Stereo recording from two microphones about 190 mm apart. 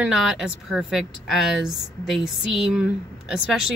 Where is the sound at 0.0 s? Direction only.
5° right (ahead or behind).